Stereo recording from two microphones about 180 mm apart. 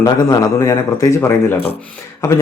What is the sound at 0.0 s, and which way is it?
Speech, 20° left (ahead or behind).